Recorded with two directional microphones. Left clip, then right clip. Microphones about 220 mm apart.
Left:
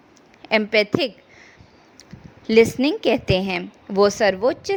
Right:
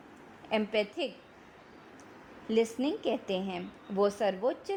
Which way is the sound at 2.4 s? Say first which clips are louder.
Left 14 dB; 30° left (ahead or behind).